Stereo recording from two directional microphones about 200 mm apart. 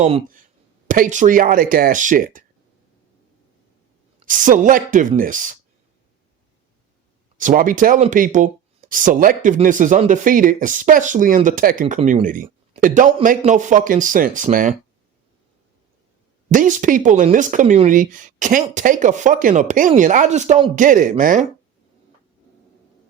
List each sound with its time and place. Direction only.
0.0 s speech: 30° right (ahead or behind)
0.9 s speech: 40° right (ahead or behind)
4.3 s speech: 40° right (ahead or behind)
7.3 s speech: 40° right (ahead or behind)
16.5 s speech: 40° right (ahead or behind)